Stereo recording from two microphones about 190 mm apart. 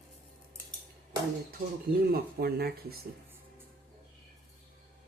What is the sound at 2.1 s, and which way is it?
Speech, 55° right (ahead or behind).